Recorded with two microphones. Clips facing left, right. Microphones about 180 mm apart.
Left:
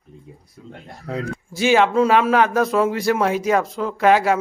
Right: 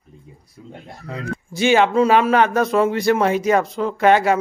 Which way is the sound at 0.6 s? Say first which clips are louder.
Right 2 dB; 5° right (ahead or behind).